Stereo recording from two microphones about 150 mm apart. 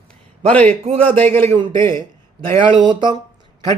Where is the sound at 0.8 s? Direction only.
45° right (ahead or behind).